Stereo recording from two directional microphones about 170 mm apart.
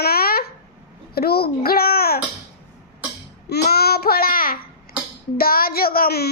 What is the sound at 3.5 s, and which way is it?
Child singing, 70° left (ahead or behind).